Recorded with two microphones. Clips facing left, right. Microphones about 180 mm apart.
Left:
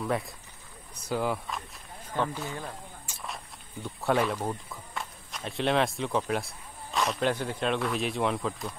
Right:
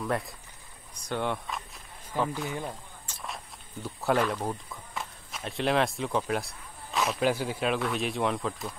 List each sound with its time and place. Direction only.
0.0 s speech: centre (ahead or behind)
3.1 s a sound: centre (ahead or behind)
3.8 s speech: centre (ahead or behind)